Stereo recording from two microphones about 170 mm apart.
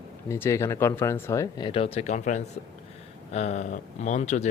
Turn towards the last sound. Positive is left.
turn(degrees=45)  # may be behind; listen again after turning